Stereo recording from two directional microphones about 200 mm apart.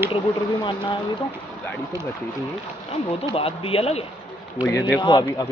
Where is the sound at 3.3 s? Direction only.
30° left (ahead or behind).